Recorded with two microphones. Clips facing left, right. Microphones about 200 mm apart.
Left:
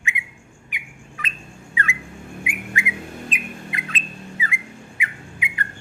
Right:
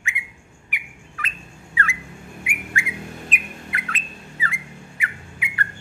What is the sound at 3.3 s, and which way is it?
Bird, 20° left (ahead or behind).